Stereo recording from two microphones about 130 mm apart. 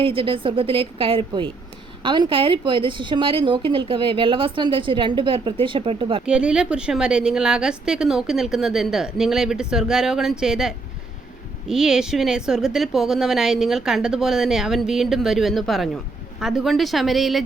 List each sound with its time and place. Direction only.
0.0 s a woman's voice: 45° right (ahead or behind)
6.2 s a woman's voice: 5° right (ahead or behind)